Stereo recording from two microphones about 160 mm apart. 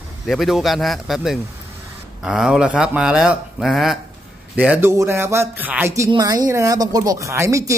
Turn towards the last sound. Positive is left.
turn(degrees=-20)  # may be behind; listen again after turning